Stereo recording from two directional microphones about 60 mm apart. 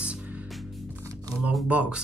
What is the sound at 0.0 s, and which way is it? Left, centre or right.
Music, right.